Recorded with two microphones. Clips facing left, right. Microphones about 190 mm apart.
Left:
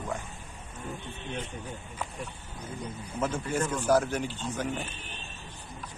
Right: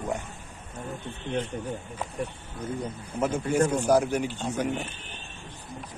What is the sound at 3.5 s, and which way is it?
Speech, 40° right (ahead or behind).